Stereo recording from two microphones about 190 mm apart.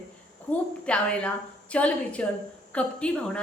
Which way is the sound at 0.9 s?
5° left (ahead or behind).